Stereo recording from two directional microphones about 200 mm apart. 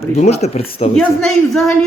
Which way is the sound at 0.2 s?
35° left (ahead or behind).